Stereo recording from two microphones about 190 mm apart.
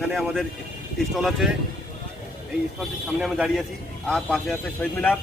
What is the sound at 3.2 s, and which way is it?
Speech, 5° right (ahead or behind).